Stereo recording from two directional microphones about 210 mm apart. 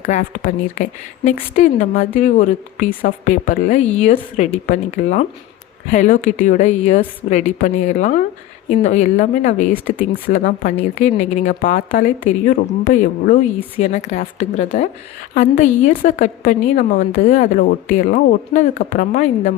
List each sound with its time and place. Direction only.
0.0 s a woman's voice: 40° left (ahead or behind)